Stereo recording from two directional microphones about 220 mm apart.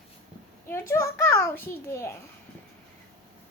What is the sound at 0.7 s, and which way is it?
A child's voice, 10° left (ahead or behind).